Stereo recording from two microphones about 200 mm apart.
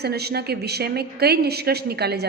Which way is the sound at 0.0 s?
55° right (ahead or behind).